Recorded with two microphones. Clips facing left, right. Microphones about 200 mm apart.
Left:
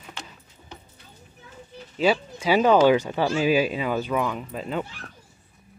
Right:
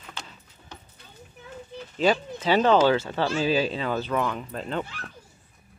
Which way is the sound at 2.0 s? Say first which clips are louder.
Left 1 dB; 10° left (ahead or behind).